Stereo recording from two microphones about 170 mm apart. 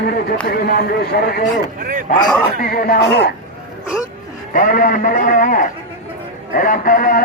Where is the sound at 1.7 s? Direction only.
50° right (ahead or behind).